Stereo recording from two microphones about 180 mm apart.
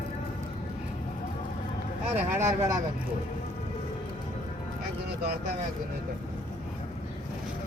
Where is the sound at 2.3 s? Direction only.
15° right (ahead or behind).